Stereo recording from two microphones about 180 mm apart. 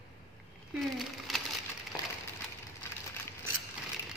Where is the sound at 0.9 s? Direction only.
Centre (ahead or behind).